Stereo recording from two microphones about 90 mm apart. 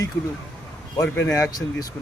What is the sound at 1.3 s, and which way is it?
Speech, 35° left (ahead or behind).